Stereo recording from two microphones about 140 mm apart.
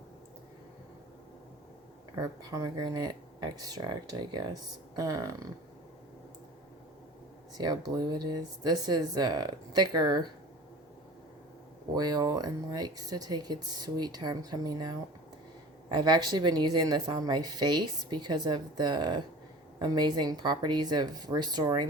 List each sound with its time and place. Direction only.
2.1 s speech: 25° right (ahead or behind)
7.5 s speech: 30° right (ahead or behind)
11.9 s speech: 30° right (ahead or behind)